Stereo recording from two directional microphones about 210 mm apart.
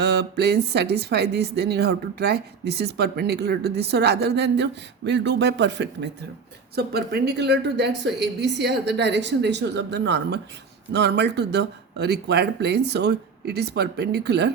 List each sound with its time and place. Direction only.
0.0 s a woman's voice: 50° right (ahead or behind)